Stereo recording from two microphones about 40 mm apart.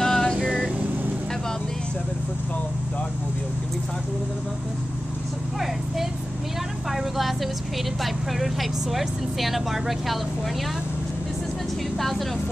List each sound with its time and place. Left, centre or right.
0.0 s vehicle: centre
0.4 s vehicle: centre
6.9 s vehicle: centre
8.0 s speech: centre